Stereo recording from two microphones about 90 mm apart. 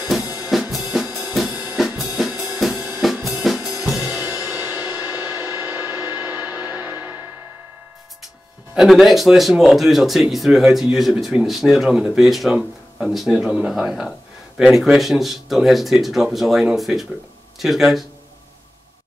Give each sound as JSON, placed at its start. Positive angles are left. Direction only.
{"t": 0.5, "sound": "drum kit", "side_deg": 0}
{"t": 3.8, "sound": "music", "side_deg": 0}
{"t": 4.5, "sound": "music", "side_deg": -25}
{"t": 8.7, "sound": "speech", "side_deg": 0}